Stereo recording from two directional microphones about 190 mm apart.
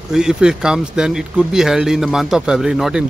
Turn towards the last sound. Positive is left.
turn(degrees=-5)  # may be behind; listen again after turning